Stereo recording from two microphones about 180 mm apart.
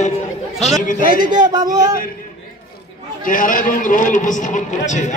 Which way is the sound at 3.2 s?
50° left (ahead or behind).